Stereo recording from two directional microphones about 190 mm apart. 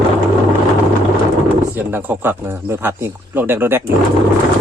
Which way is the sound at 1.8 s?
10° right (ahead or behind).